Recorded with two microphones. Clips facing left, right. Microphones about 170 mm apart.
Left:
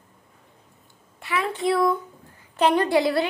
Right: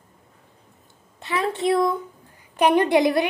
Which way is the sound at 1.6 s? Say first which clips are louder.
Right 1 dB; 20° right (ahead or behind).